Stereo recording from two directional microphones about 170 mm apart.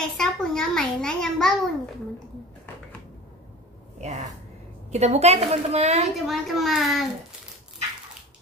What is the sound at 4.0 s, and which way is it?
A woman's voice, 40° right (ahead or behind).